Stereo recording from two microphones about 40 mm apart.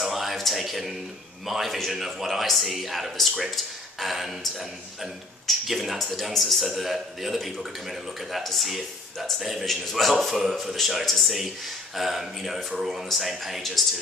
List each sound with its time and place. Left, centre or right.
0.0 s a sound: centre
1.4 s a man's voice: centre
5.7 s a man's voice: centre
10.1 s a man's voice: centre